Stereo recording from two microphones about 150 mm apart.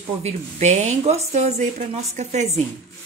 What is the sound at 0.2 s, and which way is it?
Speech, 50° right (ahead or behind).